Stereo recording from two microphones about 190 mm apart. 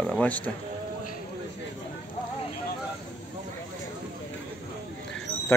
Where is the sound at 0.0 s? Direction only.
5° left (ahead or behind).